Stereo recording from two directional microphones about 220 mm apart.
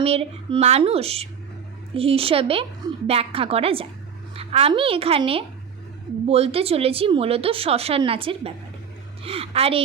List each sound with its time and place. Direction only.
0.0 s speech: 25° right (ahead or behind)